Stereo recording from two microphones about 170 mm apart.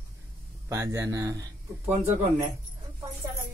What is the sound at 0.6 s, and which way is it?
Speech, 15° right (ahead or behind).